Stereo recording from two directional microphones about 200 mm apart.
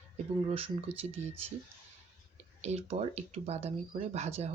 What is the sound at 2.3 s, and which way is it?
Speech, 35° right (ahead or behind).